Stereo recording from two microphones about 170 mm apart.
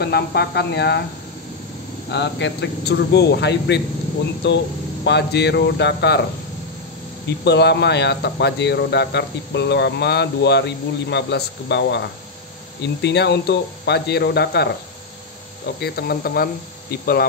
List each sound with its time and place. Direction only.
0.0 s speech: 70° left (ahead or behind)
2.0 s a man's voice: 90° left
5.0 s speech: 80° left
7.2 s speech: 85° left; by 16.4 s 65° left (ahead or behind)
16.9 s hum: 60° left (ahead or behind)